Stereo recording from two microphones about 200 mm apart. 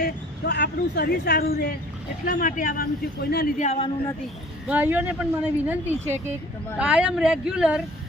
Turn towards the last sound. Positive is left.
turn(degrees=-5)  # may be behind; listen again after turning